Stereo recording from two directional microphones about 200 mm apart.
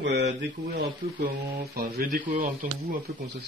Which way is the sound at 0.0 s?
55° right (ahead or behind).